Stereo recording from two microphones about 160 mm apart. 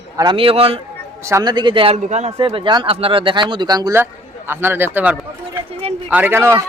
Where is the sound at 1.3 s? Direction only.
25° right (ahead or behind); by 2.5 s 45° right (ahead or behind).